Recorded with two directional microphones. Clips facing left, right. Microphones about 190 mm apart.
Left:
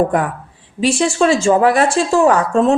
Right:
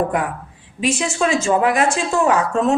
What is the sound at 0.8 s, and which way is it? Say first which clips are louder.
A woman's voice: left 5 dB; 30° left (ahead or behind).